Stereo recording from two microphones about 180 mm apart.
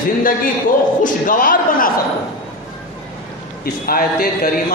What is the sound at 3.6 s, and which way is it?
Speech, 55° left (ahead or behind).